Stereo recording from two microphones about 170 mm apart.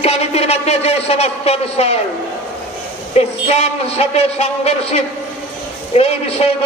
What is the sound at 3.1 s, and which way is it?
Speech, 35° left (ahead or behind).